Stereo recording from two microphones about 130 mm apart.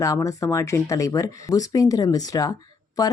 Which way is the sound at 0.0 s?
25° left (ahead or behind).